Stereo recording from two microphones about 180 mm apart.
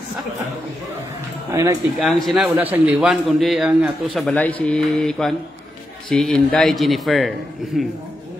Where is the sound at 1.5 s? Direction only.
20° right (ahead or behind).